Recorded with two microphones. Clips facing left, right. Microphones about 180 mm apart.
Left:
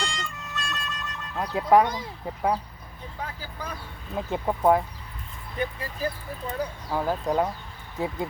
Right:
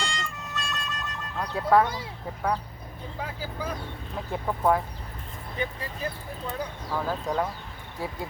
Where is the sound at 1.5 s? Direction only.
15° left (ahead or behind).